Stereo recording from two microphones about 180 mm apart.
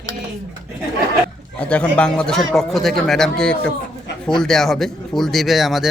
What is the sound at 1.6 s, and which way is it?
Speech, 5° left (ahead or behind).